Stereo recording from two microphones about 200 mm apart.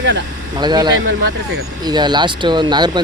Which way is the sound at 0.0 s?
65° right (ahead or behind).